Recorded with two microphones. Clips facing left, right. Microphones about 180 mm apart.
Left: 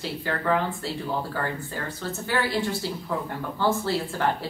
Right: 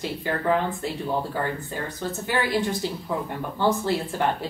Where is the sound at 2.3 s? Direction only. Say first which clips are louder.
Right 1 dB; 20° right (ahead or behind).